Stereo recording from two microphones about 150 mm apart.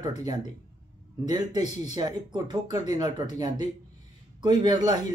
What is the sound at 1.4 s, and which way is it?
Speech, 25° right (ahead or behind).